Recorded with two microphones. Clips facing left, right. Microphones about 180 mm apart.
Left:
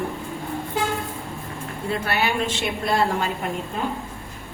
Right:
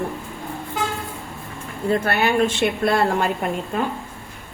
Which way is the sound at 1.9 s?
50° right (ahead or behind).